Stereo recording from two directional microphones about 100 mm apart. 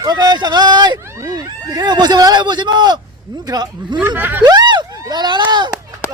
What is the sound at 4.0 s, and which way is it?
Snicker, 15° right (ahead or behind).